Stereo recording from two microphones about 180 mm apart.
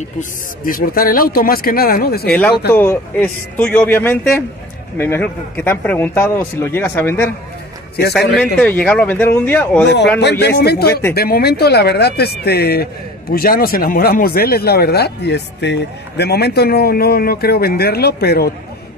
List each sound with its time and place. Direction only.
0.2 s speech: 50° left (ahead or behind)
2.7 s a man's voice: 15° left (ahead or behind)
8.4 s a man's voice: 5° left (ahead or behind)
10.4 s speech: 65° left (ahead or behind)
10.9 s a man's voice: 15° left (ahead or behind)
11.1 s speech: 60° left (ahead or behind)